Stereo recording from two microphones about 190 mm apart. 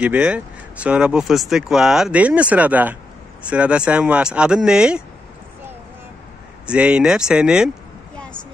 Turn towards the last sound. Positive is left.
turn(degrees=-5)  # may be behind; listen again after turning